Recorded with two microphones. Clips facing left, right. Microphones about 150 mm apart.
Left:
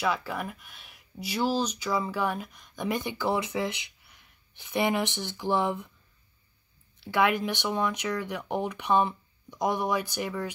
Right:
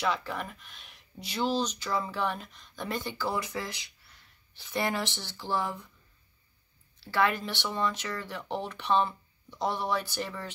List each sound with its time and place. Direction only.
0.0 s speech: 10° left (ahead or behind)
7.1 s speech: 15° left (ahead or behind)